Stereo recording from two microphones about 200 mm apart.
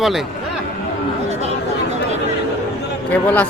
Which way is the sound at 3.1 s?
10° left (ahead or behind).